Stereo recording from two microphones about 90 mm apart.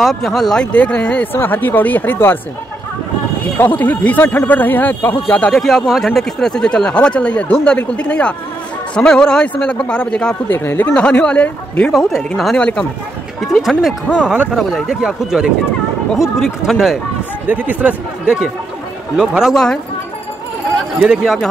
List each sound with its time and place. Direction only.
0.0 s speech: centre (ahead or behind); by 2.3 s 25° left (ahead or behind)
3.5 s speech: 20° left (ahead or behind)
5.5 s speech: 5° left (ahead or behind)
10.5 s speech: 25° left (ahead or behind)
10.9 s speech: 10° left (ahead or behind)
11.9 s speech: 5° left (ahead or behind)
12.5 s speech: 10° left (ahead or behind)
13.4 s speech: centre (ahead or behind)
14.2 s speech: 15° right (ahead or behind)
14.5 s speech: centre (ahead or behind)
17.5 s speech: 20° right (ahead or behind); by 19.8 s 5° left (ahead or behind)
21.0 s speech: 10° right (ahead or behind)